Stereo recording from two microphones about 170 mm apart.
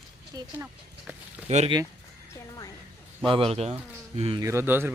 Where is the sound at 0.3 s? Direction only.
10° right (ahead or behind).